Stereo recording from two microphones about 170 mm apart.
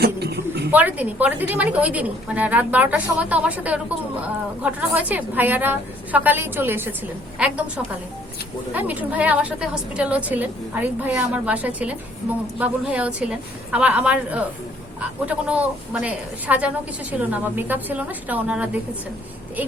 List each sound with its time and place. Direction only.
0.0 s a sound: 70° right (ahead or behind)
0.7 s a woman's voice: 10° right (ahead or behind)
8.7 s a woman's voice: 10° right (ahead or behind)